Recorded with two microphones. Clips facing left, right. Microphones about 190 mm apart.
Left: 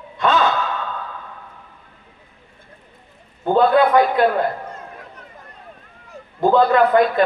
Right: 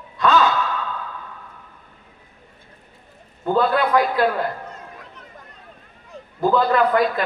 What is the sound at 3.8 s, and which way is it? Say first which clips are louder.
Speech: left 4 dB; 25° left (ahead or behind).